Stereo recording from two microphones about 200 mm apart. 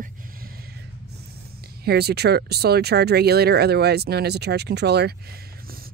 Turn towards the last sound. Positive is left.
turn(degrees=-55)  # may be behind; listen again after turning